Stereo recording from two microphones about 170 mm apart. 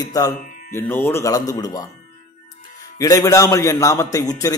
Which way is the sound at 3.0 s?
20° left (ahead or behind).